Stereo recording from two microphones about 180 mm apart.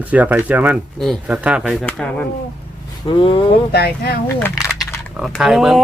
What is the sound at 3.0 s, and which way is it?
Speech, 30° left (ahead or behind).